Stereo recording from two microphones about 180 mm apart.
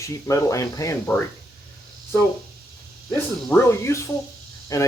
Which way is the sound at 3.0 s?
10° left (ahead or behind).